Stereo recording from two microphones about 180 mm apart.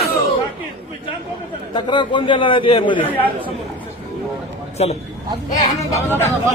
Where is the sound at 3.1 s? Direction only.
10° left (ahead or behind).